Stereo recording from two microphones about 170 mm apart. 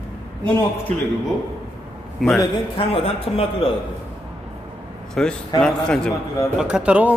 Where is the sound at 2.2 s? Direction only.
Centre (ahead or behind).